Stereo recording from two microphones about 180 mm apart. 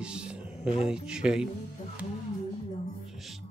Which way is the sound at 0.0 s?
5° right (ahead or behind).